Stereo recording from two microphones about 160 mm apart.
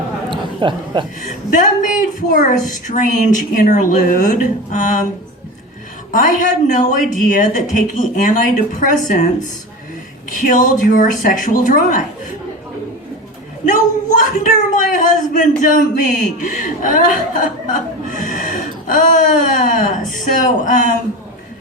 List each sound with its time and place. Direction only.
0.3 s a sound: 30° right (ahead or behind)
1.2 s a woman's voice: 55° left (ahead or behind)
6.1 s a woman's voice: 55° left (ahead or behind)
13.7 s speech: 55° left (ahead or behind)
18.1 s gasp: 55° left (ahead or behind)
19.8 s a woman's voice: 55° left (ahead or behind)